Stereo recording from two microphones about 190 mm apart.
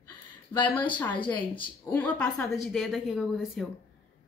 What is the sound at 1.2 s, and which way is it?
Speech, 25° left (ahead or behind).